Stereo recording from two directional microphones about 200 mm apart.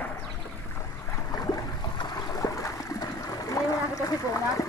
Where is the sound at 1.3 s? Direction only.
20° left (ahead or behind).